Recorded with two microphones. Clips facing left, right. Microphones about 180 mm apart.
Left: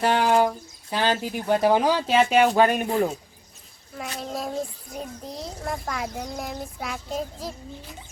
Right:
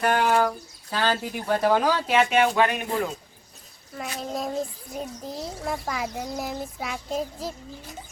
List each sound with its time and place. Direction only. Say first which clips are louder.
0.0 s speech: left 1 dB; 30° left (ahead or behind)
0.3 s speech: left 2 dB; 15° left (ahead or behind); by 3.1 s 40° left (ahead or behind)
3.9 s a child's voice: right 1 dB; centre (ahead or behind)